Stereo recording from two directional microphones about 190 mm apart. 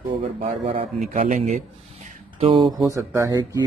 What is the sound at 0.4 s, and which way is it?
Speech, 35° right (ahead or behind).